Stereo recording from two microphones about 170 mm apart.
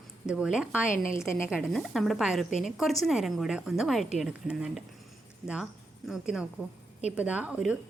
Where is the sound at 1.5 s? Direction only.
Centre (ahead or behind).